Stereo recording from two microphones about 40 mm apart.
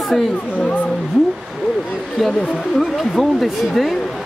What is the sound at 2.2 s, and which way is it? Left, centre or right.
Speech, centre.